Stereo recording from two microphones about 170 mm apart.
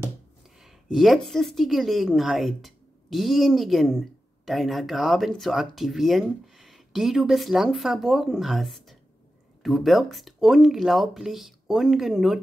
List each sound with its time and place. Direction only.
0.6 s a woman's voice: centre (ahead or behind)